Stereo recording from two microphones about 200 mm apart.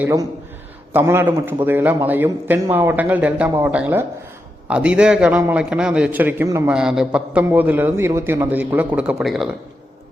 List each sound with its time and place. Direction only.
0.0 s a man's voice: 15° right (ahead or behind)